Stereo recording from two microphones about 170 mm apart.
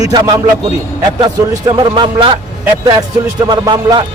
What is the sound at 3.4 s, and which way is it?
Speech, 25° right (ahead or behind).